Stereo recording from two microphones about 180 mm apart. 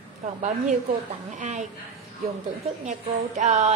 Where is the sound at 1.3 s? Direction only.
40° right (ahead or behind).